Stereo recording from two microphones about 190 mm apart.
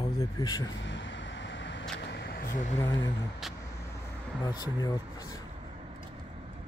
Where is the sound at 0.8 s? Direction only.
75° left (ahead or behind).